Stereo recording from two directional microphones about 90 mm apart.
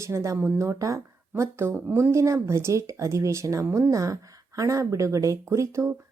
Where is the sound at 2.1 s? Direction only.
35° right (ahead or behind).